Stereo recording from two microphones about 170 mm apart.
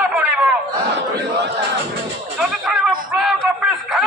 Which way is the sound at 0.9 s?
85° right.